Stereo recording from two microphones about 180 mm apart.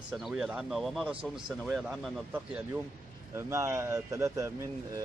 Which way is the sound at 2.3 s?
10° right (ahead or behind).